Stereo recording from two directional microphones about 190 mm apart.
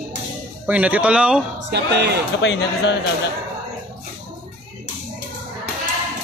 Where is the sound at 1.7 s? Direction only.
60° right (ahead or behind).